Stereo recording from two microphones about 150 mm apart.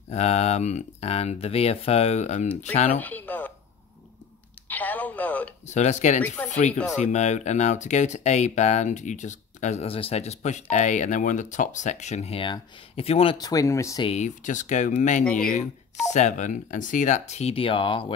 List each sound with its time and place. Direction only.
0.1 s speech: 45° left (ahead or behind)
3.0 s music: 10° left (ahead or behind)
4.6 s a sound: 10° left (ahead or behind)
5.7 s speech: 50° left (ahead or behind)
6.2 s speech: 10° left (ahead or behind)
7.0 s speech: 50° left (ahead or behind)
13.4 s speech: 25° left (ahead or behind)
14.0 s speech: 50° left (ahead or behind); by 18.1 s 35° left (ahead or behind)